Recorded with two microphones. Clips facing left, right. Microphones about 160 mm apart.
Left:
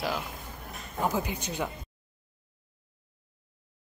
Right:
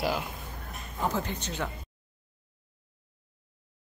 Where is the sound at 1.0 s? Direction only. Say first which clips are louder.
Left 1 dB; 10° left (ahead or behind).